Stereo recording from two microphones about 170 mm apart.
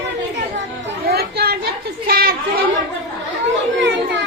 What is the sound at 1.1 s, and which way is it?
Chatter, 70° right (ahead or behind).